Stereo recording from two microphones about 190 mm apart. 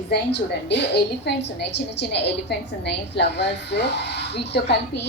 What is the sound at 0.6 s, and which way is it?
A woman's voice, 65° left (ahead or behind).